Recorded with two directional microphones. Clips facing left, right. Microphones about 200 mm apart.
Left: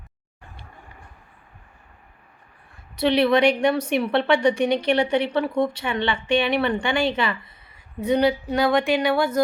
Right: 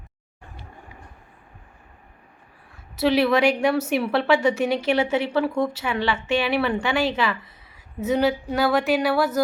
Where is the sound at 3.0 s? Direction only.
5° right (ahead or behind).